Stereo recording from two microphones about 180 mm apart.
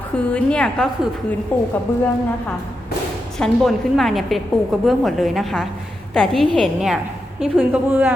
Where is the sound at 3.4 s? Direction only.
Centre (ahead or behind).